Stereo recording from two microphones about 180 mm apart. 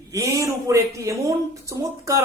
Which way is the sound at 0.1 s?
15° right (ahead or behind).